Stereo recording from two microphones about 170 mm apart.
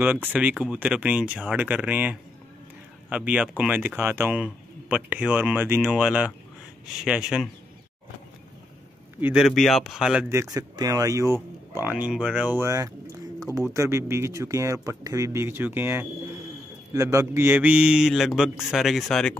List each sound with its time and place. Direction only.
0.0 s speech: 10° right (ahead or behind)
7.1 s mantra: 5° right (ahead or behind)
9.2 s mantra: 5° right (ahead or behind)
10.3 s speech: 20° right (ahead or behind)
16.9 s mantra: 20° right (ahead or behind); by 19.3 s centre (ahead or behind)